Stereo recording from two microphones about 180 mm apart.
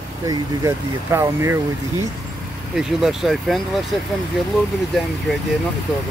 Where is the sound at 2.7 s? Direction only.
5° right (ahead or behind).